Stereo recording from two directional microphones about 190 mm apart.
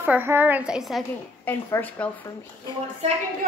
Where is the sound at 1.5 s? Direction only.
10° left (ahead or behind).